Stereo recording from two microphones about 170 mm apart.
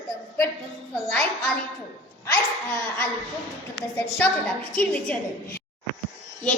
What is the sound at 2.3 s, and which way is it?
Speech, 10° left (ahead or behind).